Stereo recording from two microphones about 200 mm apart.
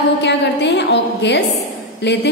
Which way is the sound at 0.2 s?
60° left (ahead or behind).